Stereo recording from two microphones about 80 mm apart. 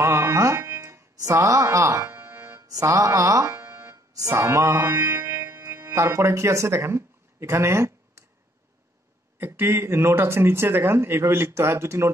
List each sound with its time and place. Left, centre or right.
0.0 s music: right
2.6 s mantra: right
3.5 s music: right
3.9 s speech: right
4.7 s speech: right
9.4 s speech: right